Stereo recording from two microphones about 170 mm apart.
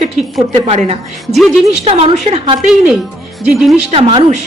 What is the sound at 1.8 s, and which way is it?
Speech, 35° right (ahead or behind).